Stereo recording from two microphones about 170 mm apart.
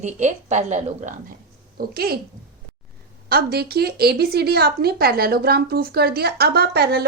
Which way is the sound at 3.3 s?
65° right (ahead or behind).